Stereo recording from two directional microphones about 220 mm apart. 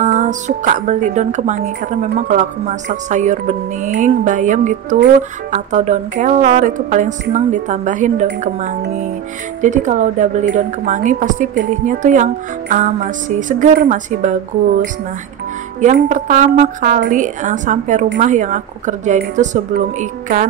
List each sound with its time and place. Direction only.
0.0 s music: 35° right (ahead or behind)
0.5 s speech: 35° right (ahead or behind)
15.8 s speech: 35° right (ahead or behind)